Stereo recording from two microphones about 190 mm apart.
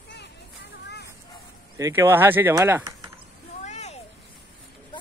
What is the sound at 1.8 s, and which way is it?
Speech, 10° right (ahead or behind).